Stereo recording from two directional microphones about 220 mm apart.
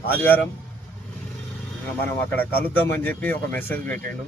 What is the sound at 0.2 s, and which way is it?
Speech, 10° left (ahead or behind).